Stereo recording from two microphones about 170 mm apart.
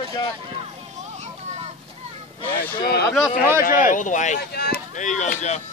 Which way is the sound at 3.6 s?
50° left (ahead or behind).